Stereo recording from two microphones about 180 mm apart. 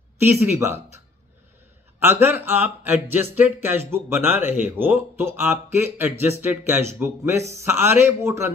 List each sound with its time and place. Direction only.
0.2 s speech: 10° right (ahead or behind)